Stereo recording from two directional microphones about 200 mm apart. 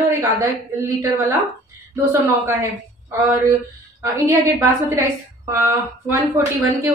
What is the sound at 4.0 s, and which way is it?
A woman's voice, 15° right (ahead or behind).